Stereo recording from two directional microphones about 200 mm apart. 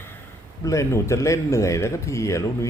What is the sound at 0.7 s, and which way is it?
Speech, 15° left (ahead or behind).